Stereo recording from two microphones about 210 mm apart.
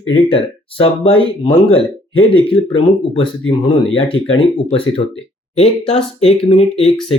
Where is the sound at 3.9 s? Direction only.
25° left (ahead or behind).